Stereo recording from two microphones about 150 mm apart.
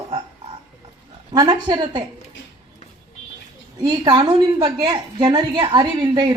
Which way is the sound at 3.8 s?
25° right (ahead or behind).